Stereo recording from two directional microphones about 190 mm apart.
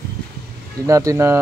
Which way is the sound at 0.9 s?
15° right (ahead or behind).